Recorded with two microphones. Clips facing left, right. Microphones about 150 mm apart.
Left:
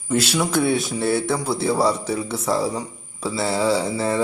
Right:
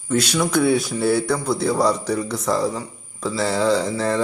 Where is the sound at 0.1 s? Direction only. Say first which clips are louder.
Right 1 dB; 5° left (ahead or behind).